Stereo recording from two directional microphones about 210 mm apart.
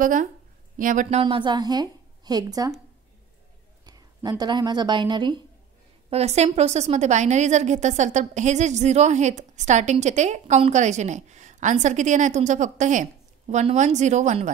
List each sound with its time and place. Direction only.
0.0 s a woman's voice: 40° right (ahead or behind)
1.2 s a woman's voice: 20° right (ahead or behind)
3.8 s a woman's voice: 20° right (ahead or behind); by 14.5 s 35° right (ahead or behind)